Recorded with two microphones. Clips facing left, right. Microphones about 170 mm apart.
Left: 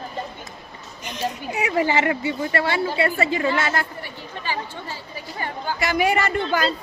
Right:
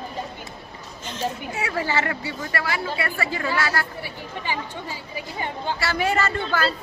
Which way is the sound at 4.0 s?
15° right (ahead or behind).